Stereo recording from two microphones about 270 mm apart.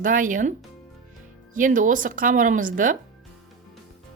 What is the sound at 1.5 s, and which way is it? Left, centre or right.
Speech, right.